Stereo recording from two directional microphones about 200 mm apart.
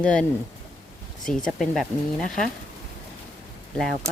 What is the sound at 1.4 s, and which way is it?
Speech, centre (ahead or behind).